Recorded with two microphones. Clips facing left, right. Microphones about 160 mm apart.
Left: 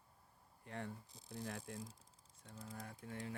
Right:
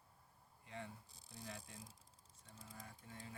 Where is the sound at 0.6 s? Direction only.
60° left (ahead or behind).